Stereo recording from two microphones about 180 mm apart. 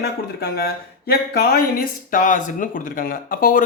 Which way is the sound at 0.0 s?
60° left (ahead or behind).